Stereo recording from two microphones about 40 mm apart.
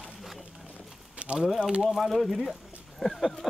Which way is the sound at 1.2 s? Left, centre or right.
Right.